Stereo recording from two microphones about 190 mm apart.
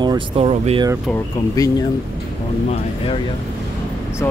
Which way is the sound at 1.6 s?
20° left (ahead or behind).